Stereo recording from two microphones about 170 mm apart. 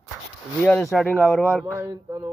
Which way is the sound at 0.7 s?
5° left (ahead or behind).